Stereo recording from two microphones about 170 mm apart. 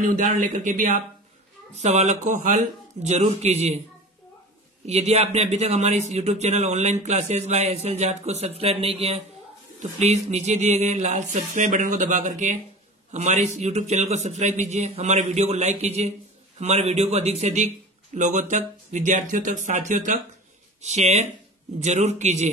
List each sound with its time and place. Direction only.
0.0 s speech: 50° right (ahead or behind)
4.8 s speech: 40° right (ahead or behind)